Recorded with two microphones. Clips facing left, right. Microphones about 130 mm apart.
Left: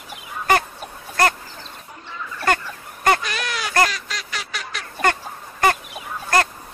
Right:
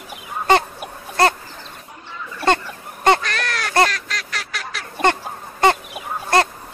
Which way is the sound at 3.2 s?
5° left (ahead or behind).